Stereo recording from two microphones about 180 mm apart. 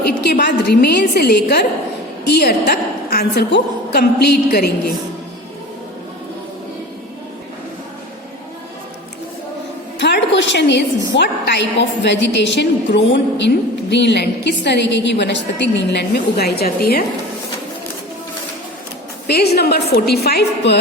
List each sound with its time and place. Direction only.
0.0 s a woman's voice: 65° left (ahead or behind)
10.0 s a woman's voice: 75° left (ahead or behind); by 17.0 s 60° left (ahead or behind)
19.3 s a woman's voice: 60° left (ahead or behind)